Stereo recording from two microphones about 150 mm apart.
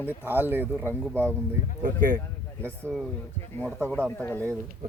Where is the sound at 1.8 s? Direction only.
60° right (ahead or behind).